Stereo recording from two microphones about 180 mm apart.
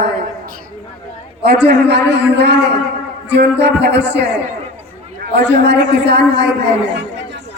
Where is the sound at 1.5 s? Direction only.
65° right (ahead or behind).